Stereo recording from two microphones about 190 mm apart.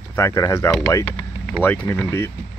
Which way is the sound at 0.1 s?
15° left (ahead or behind).